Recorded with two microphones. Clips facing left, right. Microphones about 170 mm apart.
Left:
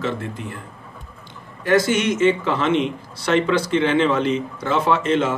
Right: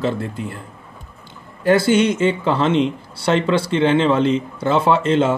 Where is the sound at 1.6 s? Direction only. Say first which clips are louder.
Right 4 dB; 30° right (ahead or behind).